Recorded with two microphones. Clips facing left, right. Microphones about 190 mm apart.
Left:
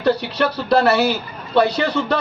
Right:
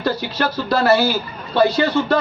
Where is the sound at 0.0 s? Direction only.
65° left (ahead or behind).